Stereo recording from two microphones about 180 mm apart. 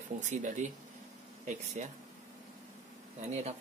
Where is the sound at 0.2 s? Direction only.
45° right (ahead or behind).